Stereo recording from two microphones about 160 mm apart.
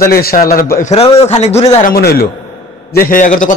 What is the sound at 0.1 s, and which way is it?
Speech, 70° left (ahead or behind).